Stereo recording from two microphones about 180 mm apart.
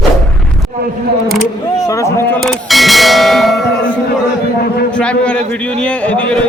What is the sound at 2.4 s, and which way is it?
Bell, centre (ahead or behind).